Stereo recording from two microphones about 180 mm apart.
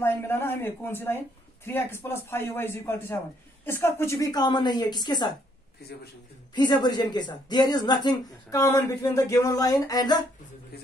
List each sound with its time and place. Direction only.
0.0 s speech: 10° left (ahead or behind)
6.5 s speech: 25° left (ahead or behind)